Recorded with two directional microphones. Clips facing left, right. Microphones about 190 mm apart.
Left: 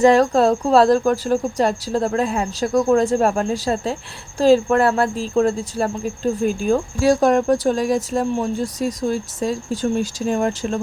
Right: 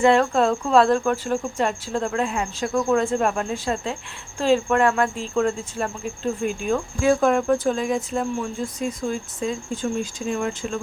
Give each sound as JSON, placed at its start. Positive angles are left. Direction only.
{"t": 0.0, "sound": "speech", "side_deg": 40}